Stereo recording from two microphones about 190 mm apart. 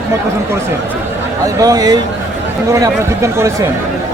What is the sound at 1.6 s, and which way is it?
A man's voice, 20° right (ahead or behind).